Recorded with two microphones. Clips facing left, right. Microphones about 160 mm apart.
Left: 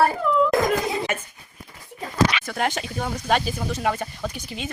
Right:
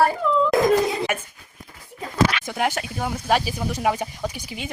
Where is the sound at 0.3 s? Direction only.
5° left (ahead or behind).